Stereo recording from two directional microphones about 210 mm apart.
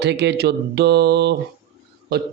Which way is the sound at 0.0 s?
55° right (ahead or behind).